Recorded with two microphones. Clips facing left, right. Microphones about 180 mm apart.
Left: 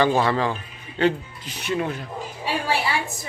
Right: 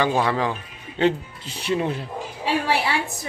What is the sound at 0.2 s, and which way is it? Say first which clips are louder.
Speech: left 1 dB; 10° right (ahead or behind).